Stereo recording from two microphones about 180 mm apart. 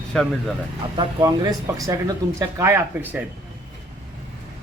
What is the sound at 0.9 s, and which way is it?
Speech, 20° right (ahead or behind).